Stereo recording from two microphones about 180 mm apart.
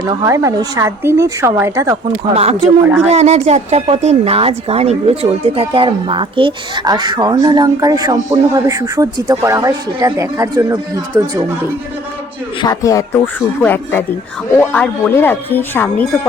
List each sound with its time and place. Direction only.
0.3 s a woman's voice: 15° right (ahead or behind)
2.3 s speech: 35° right (ahead or behind)
2.8 s a woman's voice: 10° right (ahead or behind)
3.1 s speech: 40° right (ahead or behind); by 11.5 s 20° right (ahead or behind)
12.6 s speech: 20° left (ahead or behind)